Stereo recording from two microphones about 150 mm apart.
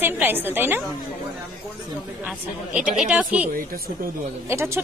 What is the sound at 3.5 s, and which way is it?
Speech, 80° right.